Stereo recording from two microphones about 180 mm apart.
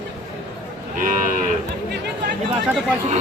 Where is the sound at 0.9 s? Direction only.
50° right (ahead or behind).